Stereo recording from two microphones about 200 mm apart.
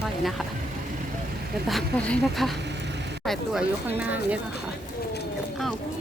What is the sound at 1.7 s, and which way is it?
Speech, 5° left (ahead or behind).